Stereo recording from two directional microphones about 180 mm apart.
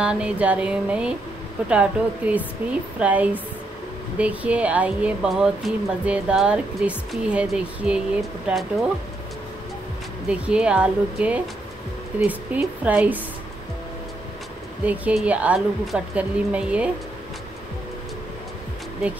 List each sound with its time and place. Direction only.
0.0 s speech: 5° right (ahead or behind)
10.2 s speech: 5° right (ahead or behind)
14.9 s speech: 5° right (ahead or behind)